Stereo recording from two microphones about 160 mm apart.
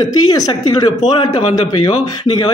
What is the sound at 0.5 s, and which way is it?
Speech, 25° left (ahead or behind).